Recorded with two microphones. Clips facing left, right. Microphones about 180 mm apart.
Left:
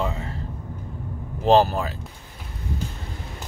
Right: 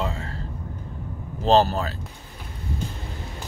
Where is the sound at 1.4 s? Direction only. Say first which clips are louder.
Left 1 dB; 15° left (ahead or behind).